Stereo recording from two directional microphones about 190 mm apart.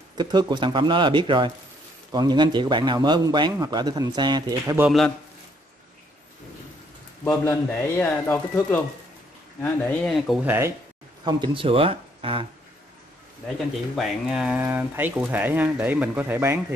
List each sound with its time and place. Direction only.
0.2 s a man's voice: 25° right (ahead or behind)
7.2 s speech: 10° left (ahead or behind)
10.4 s speech: 10° right (ahead or behind)
11.2 s a man's voice: 25° right (ahead or behind)
13.9 s speech: 5° right (ahead or behind)